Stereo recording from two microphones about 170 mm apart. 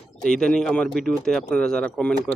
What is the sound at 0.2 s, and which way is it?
Speech, 5° left (ahead or behind).